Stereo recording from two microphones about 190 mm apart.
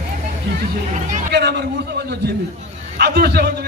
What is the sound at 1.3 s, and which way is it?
A man's voice, 60° right (ahead or behind).